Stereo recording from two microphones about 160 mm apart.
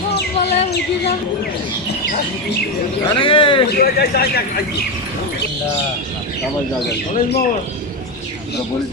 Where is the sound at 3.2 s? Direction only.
35° left (ahead or behind).